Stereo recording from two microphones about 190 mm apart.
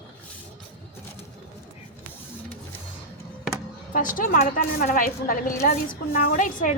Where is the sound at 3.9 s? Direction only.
45° left (ahead or behind).